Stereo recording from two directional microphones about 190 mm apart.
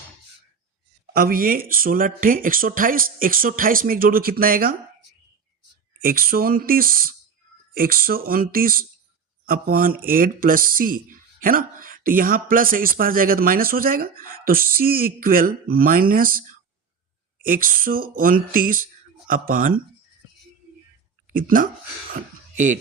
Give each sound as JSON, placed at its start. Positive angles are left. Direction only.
{"t": 1.1, "sound": "speech", "side_deg": -50}
{"t": 6.0, "sound": "speech", "side_deg": -50}
{"t": 21.3, "sound": "speech", "side_deg": -45}